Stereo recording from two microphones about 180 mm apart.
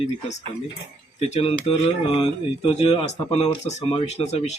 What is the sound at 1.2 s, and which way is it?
A man's voice, 35° left (ahead or behind).